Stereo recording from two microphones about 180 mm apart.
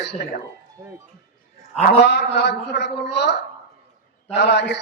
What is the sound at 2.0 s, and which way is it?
Speech, 70° left (ahead or behind).